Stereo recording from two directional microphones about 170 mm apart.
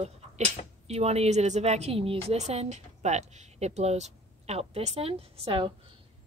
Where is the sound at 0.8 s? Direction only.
40° right (ahead or behind).